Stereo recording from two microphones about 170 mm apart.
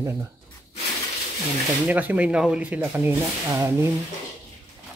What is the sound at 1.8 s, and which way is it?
Speech, 10° right (ahead or behind).